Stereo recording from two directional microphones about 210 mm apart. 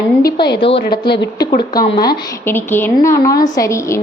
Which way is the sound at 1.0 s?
55° left (ahead or behind).